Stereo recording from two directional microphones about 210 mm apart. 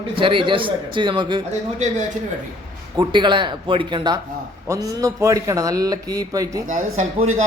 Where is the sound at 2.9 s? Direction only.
20° right (ahead or behind).